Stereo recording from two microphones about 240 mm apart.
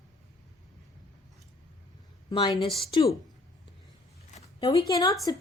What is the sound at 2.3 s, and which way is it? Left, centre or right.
Speech, left.